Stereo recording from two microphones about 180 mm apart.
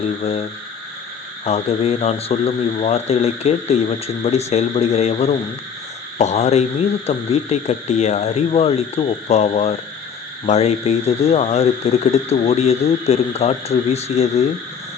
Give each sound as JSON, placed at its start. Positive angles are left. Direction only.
{"t": 0.2, "sound": "speech", "side_deg": 35}
{"t": 1.5, "sound": "speech", "side_deg": 35}